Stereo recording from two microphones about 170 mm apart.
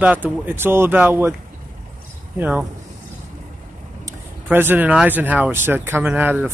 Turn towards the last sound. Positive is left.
turn(degrees=-10)  # may be behind; listen again after turning